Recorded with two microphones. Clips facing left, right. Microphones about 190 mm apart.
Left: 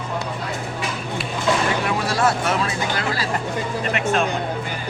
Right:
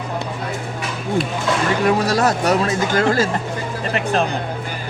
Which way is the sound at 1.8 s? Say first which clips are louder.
Right 4 dB; 40° right (ahead or behind).